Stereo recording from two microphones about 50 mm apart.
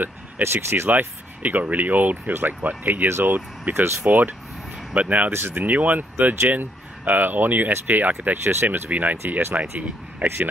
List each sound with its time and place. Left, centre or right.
0.4 s speech: right
0.8 s speech: right
3.1 s speech: right
3.7 s speech: right
4.9 s speech: right
5.3 s speech: right
10.2 s speech: right